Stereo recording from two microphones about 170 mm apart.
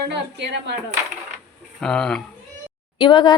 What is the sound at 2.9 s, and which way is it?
Speech, 25° left (ahead or behind).